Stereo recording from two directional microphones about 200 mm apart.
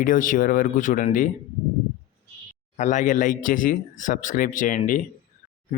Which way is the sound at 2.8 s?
40° left (ahead or behind).